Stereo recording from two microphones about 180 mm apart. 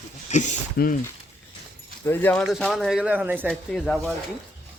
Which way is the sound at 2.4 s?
Centre (ahead or behind).